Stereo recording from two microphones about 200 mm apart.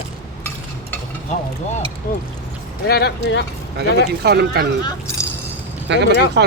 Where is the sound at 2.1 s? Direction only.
45° left (ahead or behind).